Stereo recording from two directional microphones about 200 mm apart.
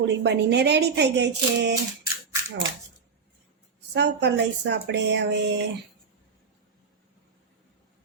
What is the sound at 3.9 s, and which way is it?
A woman's voice, 60° right (ahead or behind).